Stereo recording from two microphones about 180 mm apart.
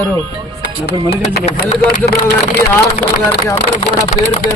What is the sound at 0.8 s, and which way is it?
Speech, 60° left (ahead or behind).